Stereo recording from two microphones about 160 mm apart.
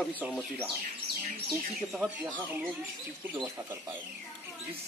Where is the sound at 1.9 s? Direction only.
Centre (ahead or behind).